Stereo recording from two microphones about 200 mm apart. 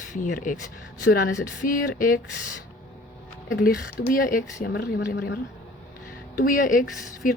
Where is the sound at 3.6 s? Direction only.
45° left (ahead or behind).